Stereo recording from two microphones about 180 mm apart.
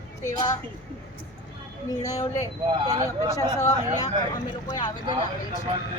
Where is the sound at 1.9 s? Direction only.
20° left (ahead or behind).